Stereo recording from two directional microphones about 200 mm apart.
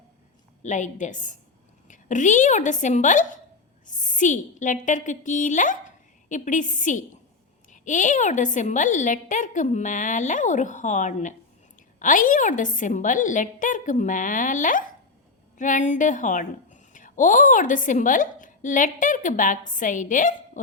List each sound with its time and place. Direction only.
0.6 s a woman's voice: 35° left (ahead or behind)